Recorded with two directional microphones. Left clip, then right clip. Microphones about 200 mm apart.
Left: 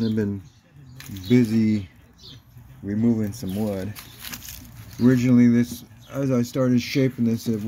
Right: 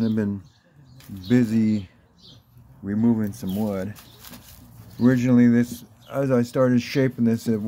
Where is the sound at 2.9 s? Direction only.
45° right (ahead or behind).